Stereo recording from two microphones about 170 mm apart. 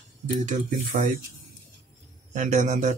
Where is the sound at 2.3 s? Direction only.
45° right (ahead or behind).